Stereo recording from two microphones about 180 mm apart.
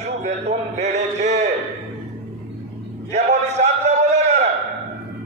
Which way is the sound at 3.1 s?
40° right (ahead or behind).